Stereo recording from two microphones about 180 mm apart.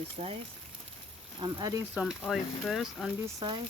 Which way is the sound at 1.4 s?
25° right (ahead or behind).